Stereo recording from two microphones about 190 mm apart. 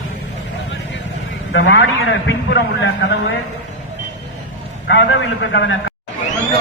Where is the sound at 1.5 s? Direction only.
80° left.